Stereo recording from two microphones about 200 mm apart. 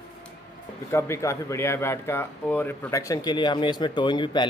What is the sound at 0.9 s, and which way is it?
Speech, 15° left (ahead or behind).